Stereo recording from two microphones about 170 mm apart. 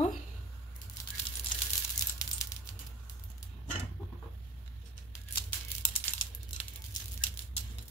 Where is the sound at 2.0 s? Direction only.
20° left (ahead or behind).